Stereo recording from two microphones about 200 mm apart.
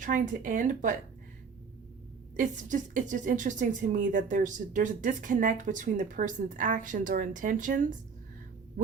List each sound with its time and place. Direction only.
0.0 s a woman's voice: 40° right (ahead or behind)
2.3 s a woman's voice: 40° right (ahead or behind)